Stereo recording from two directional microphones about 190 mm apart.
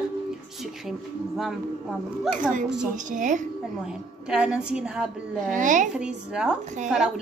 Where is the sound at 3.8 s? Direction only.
5° right (ahead or behind).